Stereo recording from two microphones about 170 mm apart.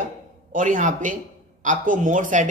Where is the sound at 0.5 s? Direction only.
50° right (ahead or behind).